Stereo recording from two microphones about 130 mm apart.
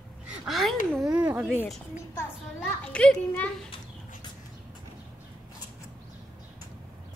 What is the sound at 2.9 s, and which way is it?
Speech, 10° left (ahead or behind).